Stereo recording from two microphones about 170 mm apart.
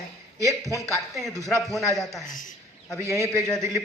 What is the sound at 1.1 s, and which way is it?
A man's voice, centre (ahead or behind).